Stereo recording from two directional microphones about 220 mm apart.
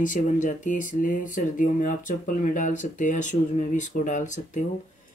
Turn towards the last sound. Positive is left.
turn(degrees=35)  # may be behind; listen again after turning